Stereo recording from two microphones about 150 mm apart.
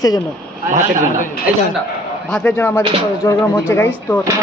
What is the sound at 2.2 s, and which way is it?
Speech, 5° left (ahead or behind).